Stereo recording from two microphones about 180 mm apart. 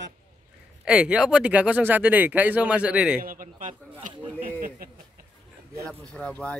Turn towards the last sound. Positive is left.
turn(degrees=5)  # may be behind; listen again after turning